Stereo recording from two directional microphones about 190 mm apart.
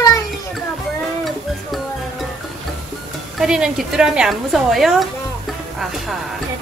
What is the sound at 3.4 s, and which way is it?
Speech, 5° right (ahead or behind).